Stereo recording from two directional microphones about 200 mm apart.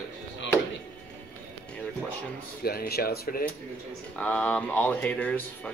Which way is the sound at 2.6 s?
50° left (ahead or behind).